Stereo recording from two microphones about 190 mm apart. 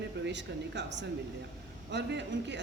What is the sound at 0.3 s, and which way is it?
Speech, 70° right (ahead or behind).